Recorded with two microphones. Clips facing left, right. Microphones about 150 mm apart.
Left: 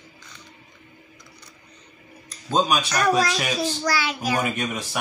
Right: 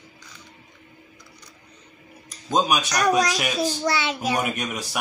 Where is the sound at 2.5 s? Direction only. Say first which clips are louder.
Even; 15° right (ahead or behind).